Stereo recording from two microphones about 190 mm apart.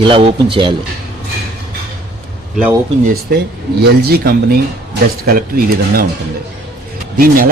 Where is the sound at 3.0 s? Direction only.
55° right (ahead or behind).